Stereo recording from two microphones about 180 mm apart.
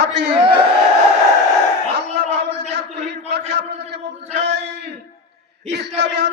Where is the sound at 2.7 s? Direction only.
70° right (ahead or behind).